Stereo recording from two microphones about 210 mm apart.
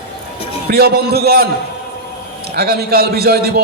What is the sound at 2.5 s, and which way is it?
A man's voice, 45° right (ahead or behind).